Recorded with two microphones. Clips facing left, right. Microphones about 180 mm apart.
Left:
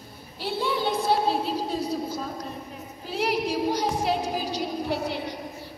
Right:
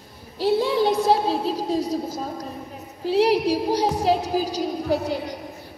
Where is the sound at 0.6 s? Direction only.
90° right.